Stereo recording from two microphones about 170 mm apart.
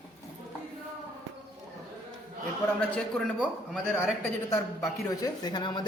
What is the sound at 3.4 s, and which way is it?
Speech, centre (ahead or behind).